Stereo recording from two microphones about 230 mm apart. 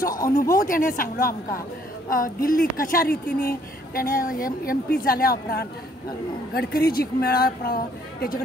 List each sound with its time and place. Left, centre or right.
0.4 s speech: left